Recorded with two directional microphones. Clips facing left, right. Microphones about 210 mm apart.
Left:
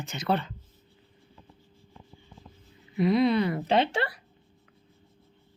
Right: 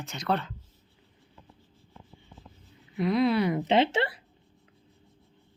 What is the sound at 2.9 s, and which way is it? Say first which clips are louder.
Speech: left 2 dB; centre (ahead or behind).